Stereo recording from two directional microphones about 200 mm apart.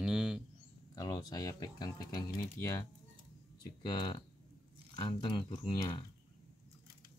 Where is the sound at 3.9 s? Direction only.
25° left (ahead or behind).